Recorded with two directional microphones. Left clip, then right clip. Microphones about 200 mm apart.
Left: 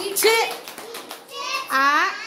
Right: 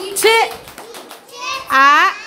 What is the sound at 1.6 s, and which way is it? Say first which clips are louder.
Speech: right 9 dB; 20° right (ahead or behind).